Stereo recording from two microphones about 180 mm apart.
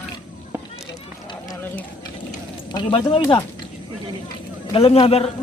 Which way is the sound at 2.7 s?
25° left (ahead or behind).